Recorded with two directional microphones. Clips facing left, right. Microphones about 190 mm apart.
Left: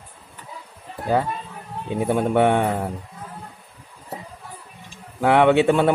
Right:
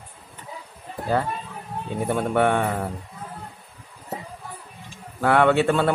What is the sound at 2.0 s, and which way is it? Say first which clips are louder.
Speech: left 3 dB; 15° left (ahead or behind).